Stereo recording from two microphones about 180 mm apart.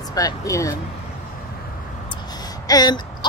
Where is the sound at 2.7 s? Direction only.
20° left (ahead or behind).